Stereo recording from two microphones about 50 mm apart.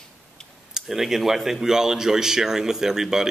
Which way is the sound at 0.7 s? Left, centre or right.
Centre.